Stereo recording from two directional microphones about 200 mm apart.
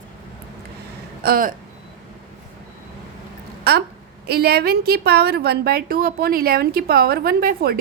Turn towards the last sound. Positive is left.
turn(degrees=-50)  # may be behind; listen again after turning